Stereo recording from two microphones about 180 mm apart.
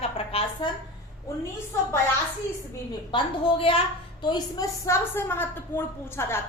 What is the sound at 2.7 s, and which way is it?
A woman's voice, 30° left (ahead or behind).